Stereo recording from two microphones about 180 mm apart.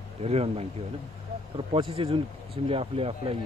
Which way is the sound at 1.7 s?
30° right (ahead or behind).